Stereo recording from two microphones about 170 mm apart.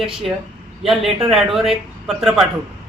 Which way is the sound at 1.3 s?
Centre (ahead or behind).